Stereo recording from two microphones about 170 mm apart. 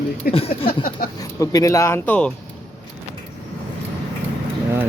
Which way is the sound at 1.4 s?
20° left (ahead or behind).